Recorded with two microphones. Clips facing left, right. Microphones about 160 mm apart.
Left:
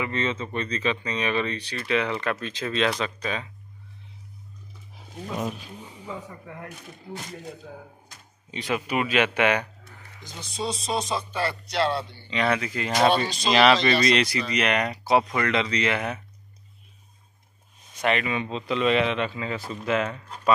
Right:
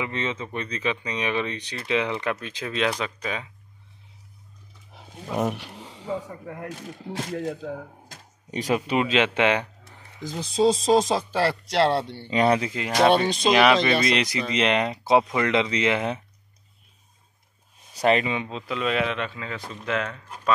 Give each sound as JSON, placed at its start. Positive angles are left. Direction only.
{"t": 0.0, "sound": "speech", "side_deg": -15}
{"t": 4.9, "sound": "speech", "side_deg": -65}
{"t": 6.4, "sound": "speech", "side_deg": -45}
{"t": 7.1, "sound": "speech", "side_deg": -90}
{"t": 8.5, "sound": "speech", "side_deg": -40}
{"t": 10.6, "sound": "speech", "side_deg": -90}
{"t": 12.3, "sound": "speech", "side_deg": -40}
{"t": 12.7, "sound": "speech", "side_deg": -15}
{"t": 17.9, "sound": "speech", "side_deg": -35}
{"t": 18.5, "sound": "speech", "side_deg": 0}